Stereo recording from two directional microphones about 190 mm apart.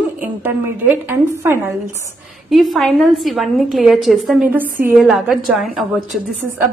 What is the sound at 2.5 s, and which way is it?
A woman's voice, centre (ahead or behind).